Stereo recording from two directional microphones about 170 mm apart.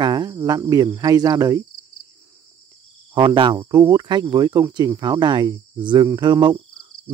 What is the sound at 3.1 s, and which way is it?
Speech, 30° right (ahead or behind).